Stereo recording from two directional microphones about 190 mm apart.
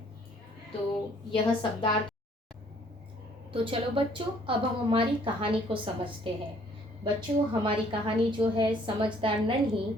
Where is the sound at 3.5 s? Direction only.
25° right (ahead or behind).